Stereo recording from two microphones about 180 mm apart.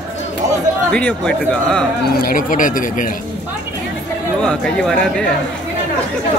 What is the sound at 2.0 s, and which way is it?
Speech, 55° left (ahead or behind).